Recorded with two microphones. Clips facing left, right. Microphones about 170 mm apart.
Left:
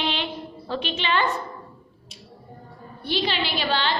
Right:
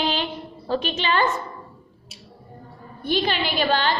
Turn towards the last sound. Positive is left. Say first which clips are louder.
# right 3 dB
turn(degrees=-45)  # may be behind; listen again after turning